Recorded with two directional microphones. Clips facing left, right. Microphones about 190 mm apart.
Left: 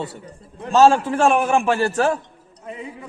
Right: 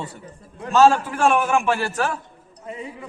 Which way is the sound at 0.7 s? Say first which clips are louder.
Left 2 dB; 35° left (ahead or behind).